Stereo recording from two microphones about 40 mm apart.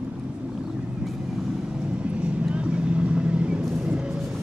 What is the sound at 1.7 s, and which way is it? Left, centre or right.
Vehicle, right.